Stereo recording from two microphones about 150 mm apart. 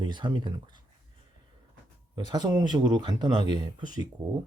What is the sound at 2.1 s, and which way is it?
Speech, 25° right (ahead or behind).